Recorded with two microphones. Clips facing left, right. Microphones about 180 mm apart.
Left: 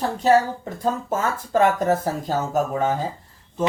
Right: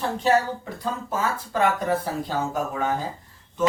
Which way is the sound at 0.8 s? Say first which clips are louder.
Left 4 dB; 45° left (ahead or behind).